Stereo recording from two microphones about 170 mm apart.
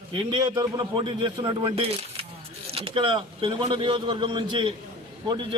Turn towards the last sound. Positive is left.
turn(degrees=-30)  # may be behind; listen again after turning